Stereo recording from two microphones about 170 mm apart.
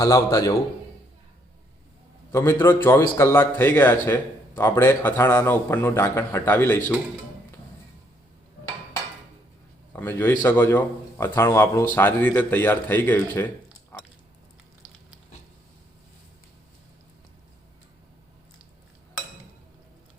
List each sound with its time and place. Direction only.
0.0 s a man's voice: 20° left (ahead or behind)
2.3 s a man's voice: 15° left (ahead or behind)
9.9 s a man's voice: 15° left (ahead or behind)